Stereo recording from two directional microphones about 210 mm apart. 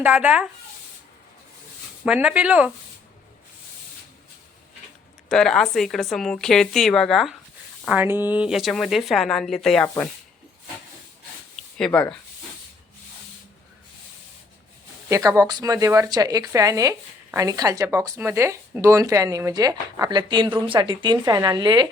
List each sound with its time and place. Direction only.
0.0 s speech: 5° right (ahead or behind)
2.0 s speech: 5° right (ahead or behind)
5.3 s speech: 5° left (ahead or behind)
11.8 s speech: 5° left (ahead or behind)
15.1 s speech: 15° right (ahead or behind)